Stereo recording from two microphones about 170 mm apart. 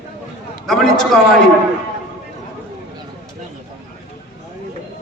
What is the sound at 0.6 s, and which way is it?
Speech, centre (ahead or behind).